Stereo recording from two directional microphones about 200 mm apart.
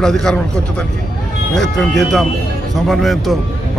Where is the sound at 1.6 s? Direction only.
Centre (ahead or behind).